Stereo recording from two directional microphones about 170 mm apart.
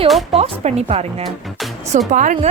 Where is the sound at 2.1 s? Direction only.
45° right (ahead or behind).